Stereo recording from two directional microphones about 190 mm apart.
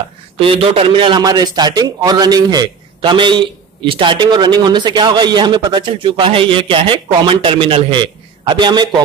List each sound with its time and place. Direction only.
0.4 s a man's voice: 30° right (ahead or behind)